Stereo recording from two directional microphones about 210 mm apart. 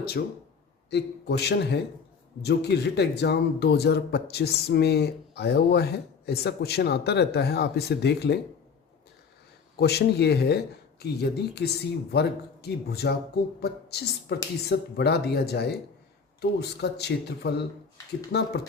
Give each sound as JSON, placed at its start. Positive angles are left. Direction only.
{"t": 0.0, "sound": "speech", "side_deg": 50}
{"t": 9.8, "sound": "speech", "side_deg": 50}